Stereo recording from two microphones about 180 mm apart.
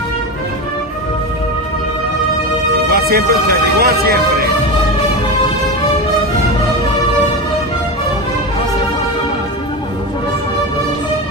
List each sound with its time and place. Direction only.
2.9 s speech: 60° right (ahead or behind)